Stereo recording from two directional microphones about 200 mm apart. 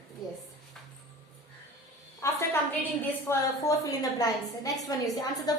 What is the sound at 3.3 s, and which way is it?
A woman's voice, 15° left (ahead or behind).